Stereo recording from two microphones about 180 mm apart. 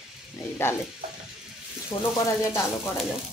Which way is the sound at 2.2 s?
15° left (ahead or behind).